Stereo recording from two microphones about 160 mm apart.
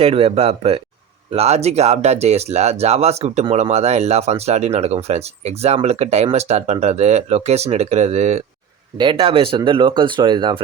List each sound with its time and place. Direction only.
0.0 s speech: 35° right (ahead or behind)
9.0 s speech: 30° right (ahead or behind)